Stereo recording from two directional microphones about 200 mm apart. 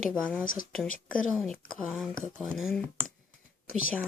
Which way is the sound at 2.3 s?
10° right (ahead or behind).